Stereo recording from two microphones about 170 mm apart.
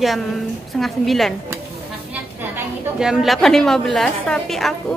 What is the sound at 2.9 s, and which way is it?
A woman's voice, 5° right (ahead or behind).